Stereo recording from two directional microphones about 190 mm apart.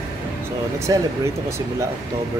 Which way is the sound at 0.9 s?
20° right (ahead or behind).